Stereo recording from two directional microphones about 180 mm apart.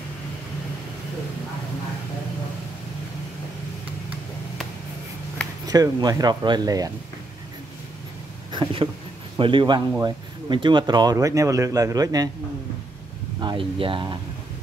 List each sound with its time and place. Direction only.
5.7 s speech: 20° right (ahead or behind)
8.5 s a sound: 25° right (ahead or behind)
9.4 s speech: 25° right (ahead or behind)
13.4 s speech: 25° right (ahead or behind)